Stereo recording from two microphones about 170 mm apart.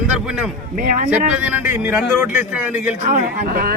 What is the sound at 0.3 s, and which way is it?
Speech, 5° right (ahead or behind).